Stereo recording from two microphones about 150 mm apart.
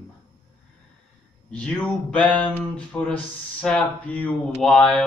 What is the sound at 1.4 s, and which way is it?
Speech, 10° left (ahead or behind).